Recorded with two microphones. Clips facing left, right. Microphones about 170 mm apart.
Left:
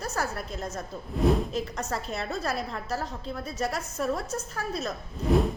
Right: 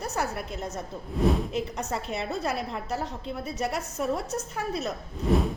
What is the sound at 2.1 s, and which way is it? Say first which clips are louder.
A woman's voice: right 2 dB; 15° right (ahead or behind).